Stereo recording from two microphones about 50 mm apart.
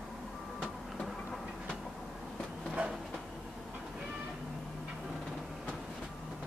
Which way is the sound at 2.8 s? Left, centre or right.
Right.